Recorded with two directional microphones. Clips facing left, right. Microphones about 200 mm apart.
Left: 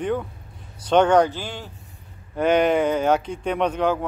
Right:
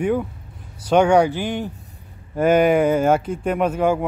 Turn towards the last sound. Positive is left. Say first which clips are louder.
# right 3 dB
turn(degrees=-10)  # may be behind; listen again after turning